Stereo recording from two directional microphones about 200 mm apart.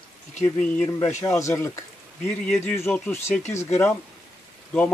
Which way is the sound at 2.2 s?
5° left (ahead or behind).